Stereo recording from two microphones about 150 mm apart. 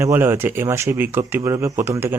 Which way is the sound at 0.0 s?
15° right (ahead or behind).